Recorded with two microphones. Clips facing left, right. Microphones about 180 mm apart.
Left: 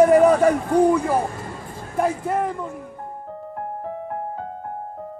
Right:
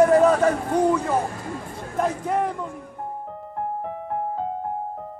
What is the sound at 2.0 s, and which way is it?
Speech, 5° left (ahead or behind).